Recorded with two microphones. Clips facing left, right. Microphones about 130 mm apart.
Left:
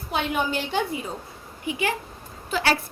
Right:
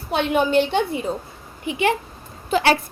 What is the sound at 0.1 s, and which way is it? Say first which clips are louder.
Speech: right 7 dB; 65° right (ahead or behind).